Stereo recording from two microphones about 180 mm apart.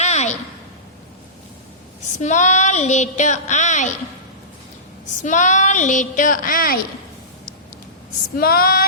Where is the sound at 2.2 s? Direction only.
40° left (ahead or behind).